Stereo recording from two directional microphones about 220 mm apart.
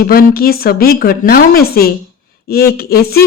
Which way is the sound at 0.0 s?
40° left (ahead or behind).